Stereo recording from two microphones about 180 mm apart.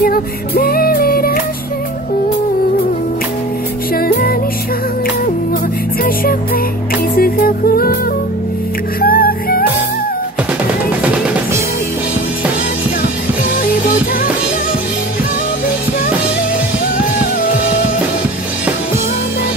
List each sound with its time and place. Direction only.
0.0 s music: 55° left (ahead or behind)
3.9 s music: 55° left (ahead or behind)
6.0 s music: 55° left (ahead or behind)
9.0 s music: 55° left (ahead or behind)
13.7 s music: 55° left (ahead or behind)